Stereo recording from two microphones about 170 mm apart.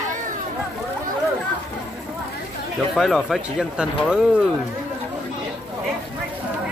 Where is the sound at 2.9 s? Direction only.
Centre (ahead or behind).